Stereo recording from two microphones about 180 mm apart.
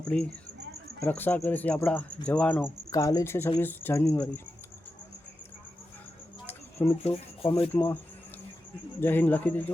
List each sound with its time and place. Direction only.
0.1 s speech: 5° left (ahead or behind)
6.4 s a sound: 10° left (ahead or behind)
7.0 s speech: 35° left (ahead or behind)
7.7 s speech: 10° left (ahead or behind)
9.0 s speech: 10° left (ahead or behind)